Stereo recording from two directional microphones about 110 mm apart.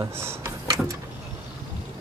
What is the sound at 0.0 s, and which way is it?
Speech, 25° right (ahead or behind).